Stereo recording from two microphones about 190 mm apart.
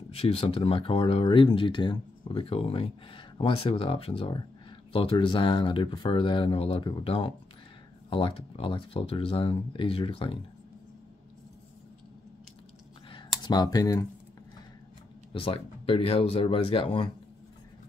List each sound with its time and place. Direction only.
0.1 s speech: 30° left (ahead or behind)
13.4 s speech: 20° left (ahead or behind)
15.3 s speech: 30° left (ahead or behind)